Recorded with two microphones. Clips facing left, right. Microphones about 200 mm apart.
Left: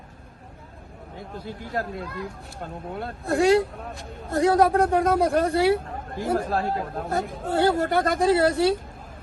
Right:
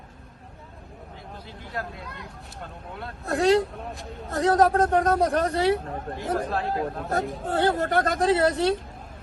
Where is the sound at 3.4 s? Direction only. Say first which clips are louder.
Left 1 dB; 5° left (ahead or behind).